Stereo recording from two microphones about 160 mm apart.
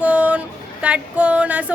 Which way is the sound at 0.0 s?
10° right (ahead or behind).